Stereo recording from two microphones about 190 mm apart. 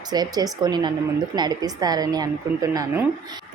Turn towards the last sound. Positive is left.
turn(degrees=-15)  # may be behind; listen again after turning